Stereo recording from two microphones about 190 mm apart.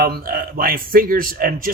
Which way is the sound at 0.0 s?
50° right (ahead or behind).